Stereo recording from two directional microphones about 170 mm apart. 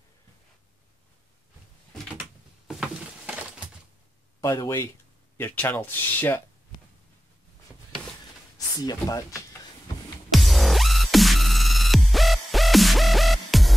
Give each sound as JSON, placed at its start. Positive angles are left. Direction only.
{"t": 2.7, "sound": "a sound", "side_deg": -5}
{"t": 4.4, "sound": "speech", "side_deg": 15}
{"t": 8.8, "sound": "speech", "side_deg": 20}
{"t": 10.3, "sound": "music", "side_deg": 0}